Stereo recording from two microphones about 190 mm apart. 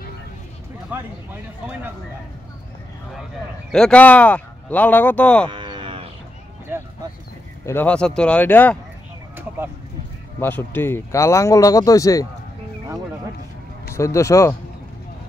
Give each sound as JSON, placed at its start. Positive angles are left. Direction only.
{"t": 0.9, "sound": "speech", "side_deg": -10}
{"t": 3.7, "sound": "speech", "side_deg": 5}
{"t": 5.5, "sound": "moo", "side_deg": -25}
{"t": 7.6, "sound": "speech", "side_deg": 10}
{"t": 10.4, "sound": "speech", "side_deg": 10}
{"t": 13.9, "sound": "speech", "side_deg": 15}